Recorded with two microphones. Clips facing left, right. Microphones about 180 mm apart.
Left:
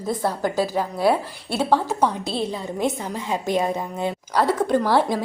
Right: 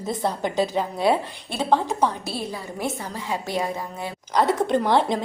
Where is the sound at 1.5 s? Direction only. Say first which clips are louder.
Left 1 dB; 15° right (ahead or behind).